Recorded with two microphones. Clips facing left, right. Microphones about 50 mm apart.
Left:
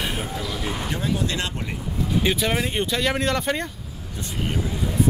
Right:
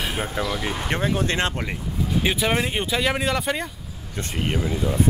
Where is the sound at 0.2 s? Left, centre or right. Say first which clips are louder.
Right 3 dB; right.